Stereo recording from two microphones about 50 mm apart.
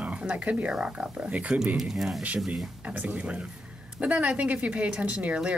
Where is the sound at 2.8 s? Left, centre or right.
Right.